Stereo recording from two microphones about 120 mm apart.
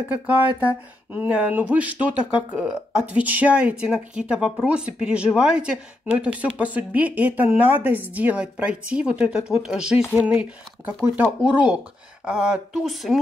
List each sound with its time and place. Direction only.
0.1 s speech: 10° right (ahead or behind)